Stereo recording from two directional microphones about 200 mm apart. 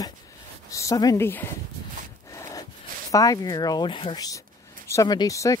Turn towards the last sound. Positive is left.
turn(degrees=15)  # may be behind; listen again after turning